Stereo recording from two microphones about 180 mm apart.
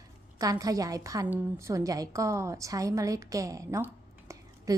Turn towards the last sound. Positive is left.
turn(degrees=-20)  # may be behind; listen again after turning